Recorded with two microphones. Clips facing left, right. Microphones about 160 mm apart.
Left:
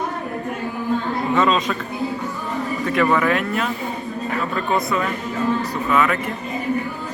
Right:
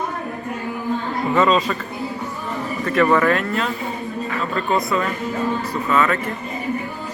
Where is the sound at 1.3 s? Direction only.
Centre (ahead or behind).